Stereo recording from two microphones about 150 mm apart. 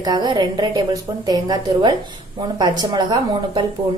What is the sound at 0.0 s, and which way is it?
Speech, 25° right (ahead or behind).